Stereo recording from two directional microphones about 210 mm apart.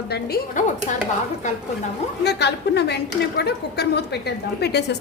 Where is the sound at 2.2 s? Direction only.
55° left (ahead or behind).